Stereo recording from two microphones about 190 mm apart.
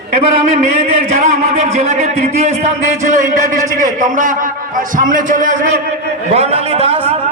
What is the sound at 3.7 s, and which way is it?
A man's voice, 45° right (ahead or behind).